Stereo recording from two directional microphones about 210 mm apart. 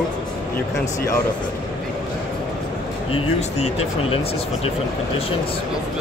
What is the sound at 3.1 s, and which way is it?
Speech, 25° left (ahead or behind).